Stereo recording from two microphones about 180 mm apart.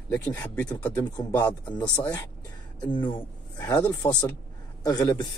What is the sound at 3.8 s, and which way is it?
Speech, 20° left (ahead or behind).